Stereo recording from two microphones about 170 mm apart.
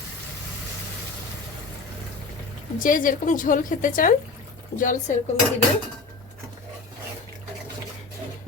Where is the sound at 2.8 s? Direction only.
50° left (ahead or behind).